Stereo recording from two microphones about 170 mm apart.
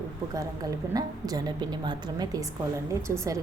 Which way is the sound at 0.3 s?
20° right (ahead or behind).